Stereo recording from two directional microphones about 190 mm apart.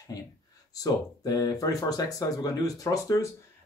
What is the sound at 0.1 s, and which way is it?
Speech, 20° left (ahead or behind).